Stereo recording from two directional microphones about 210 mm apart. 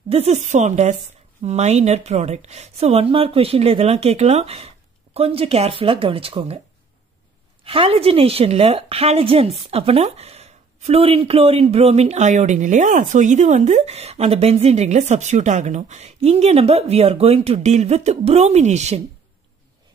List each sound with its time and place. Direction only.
0.1 s a woman's voice: 30° right (ahead or behind)
7.6 s a woman's voice: 25° right (ahead or behind)